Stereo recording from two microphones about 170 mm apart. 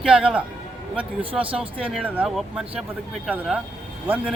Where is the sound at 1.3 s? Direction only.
35° right (ahead or behind).